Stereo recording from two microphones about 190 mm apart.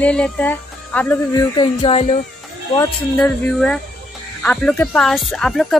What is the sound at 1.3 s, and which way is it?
Speech, 25° left (ahead or behind).